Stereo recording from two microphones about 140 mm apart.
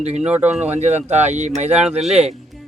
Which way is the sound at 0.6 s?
55° right (ahead or behind).